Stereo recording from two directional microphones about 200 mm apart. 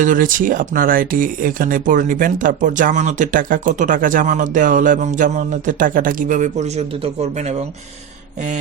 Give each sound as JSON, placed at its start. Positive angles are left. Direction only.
{"t": 0.0, "sound": "speech", "side_deg": -40}